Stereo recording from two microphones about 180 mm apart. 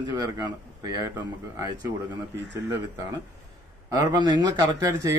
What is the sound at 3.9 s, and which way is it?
Speech, 20° right (ahead or behind).